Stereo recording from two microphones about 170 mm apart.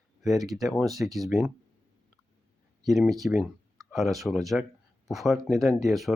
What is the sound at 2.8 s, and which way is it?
Speech, centre (ahead or behind).